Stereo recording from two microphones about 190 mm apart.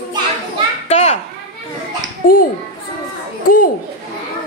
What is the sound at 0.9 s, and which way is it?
Children playing, 35° left (ahead or behind).